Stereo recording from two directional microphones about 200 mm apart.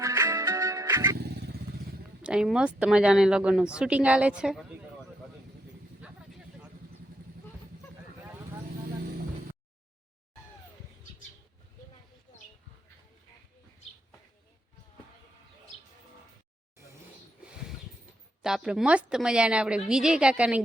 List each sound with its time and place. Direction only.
0.0 s music: 15° right (ahead or behind)
1.2 s motorcycle: 55° right (ahead or behind)
2.2 s speech: 5° right (ahead or behind)
18.4 s speech: 5° right (ahead or behind)